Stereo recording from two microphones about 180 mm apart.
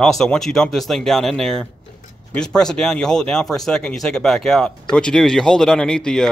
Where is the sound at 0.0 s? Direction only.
5° left (ahead or behind).